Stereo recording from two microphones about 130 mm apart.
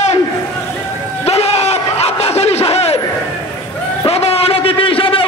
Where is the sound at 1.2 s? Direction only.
50° left (ahead or behind).